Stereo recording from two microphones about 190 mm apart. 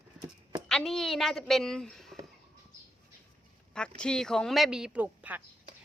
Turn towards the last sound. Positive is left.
turn(degrees=-10)  # may be behind; listen again after turning